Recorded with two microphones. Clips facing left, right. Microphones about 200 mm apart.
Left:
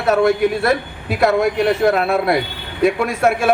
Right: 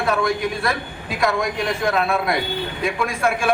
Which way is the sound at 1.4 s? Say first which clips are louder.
Left 7 dB; 65° left (ahead or behind).